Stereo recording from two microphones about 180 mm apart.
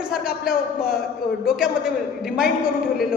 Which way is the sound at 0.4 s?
55° left (ahead or behind).